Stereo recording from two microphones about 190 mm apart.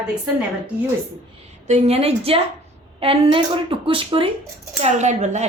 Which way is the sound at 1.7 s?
35° right (ahead or behind).